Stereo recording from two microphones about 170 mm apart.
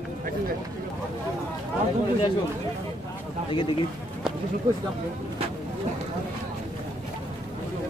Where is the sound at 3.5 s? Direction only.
30° left (ahead or behind).